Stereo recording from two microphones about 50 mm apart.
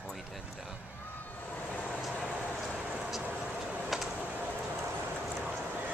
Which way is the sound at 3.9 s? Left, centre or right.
Centre.